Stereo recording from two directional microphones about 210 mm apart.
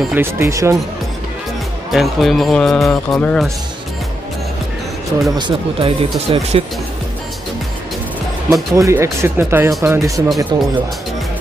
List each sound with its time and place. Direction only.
0.0 s speech: 10° right (ahead or behind)
1.9 s speech: centre (ahead or behind)
5.4 s speech: 25° right (ahead or behind)
8.7 s speech: 15° right (ahead or behind)